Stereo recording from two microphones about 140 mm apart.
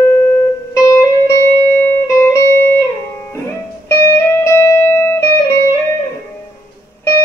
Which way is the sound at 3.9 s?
20° left (ahead or behind).